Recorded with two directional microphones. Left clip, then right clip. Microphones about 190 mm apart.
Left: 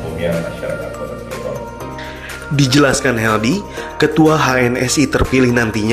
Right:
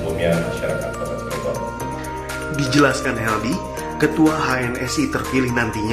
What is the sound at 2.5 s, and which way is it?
Speech, 35° left (ahead or behind).